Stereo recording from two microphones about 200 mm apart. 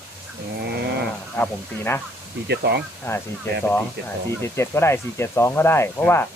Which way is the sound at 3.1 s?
10° left (ahead or behind).